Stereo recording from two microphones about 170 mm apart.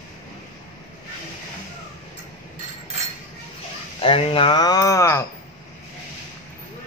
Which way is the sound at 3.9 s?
35° left (ahead or behind).